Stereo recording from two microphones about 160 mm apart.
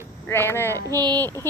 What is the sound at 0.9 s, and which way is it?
Child singing, 25° right (ahead or behind).